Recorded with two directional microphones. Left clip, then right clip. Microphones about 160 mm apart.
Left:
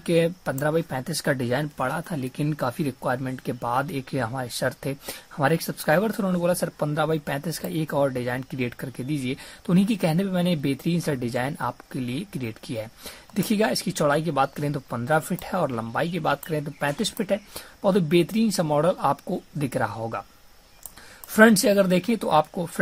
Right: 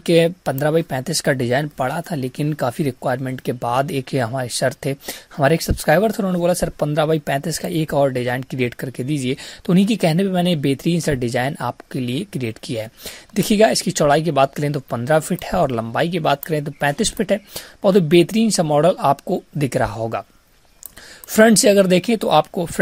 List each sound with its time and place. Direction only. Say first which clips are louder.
0.0 s speech: right 7 dB; 40° right (ahead or behind)
21.3 s speech: right 5 dB; 40° right (ahead or behind)